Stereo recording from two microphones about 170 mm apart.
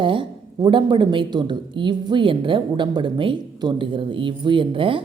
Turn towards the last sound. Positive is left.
turn(degrees=-30)  # may be behind; listen again after turning